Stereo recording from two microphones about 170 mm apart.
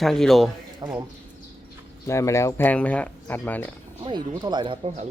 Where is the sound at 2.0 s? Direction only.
15° left (ahead or behind).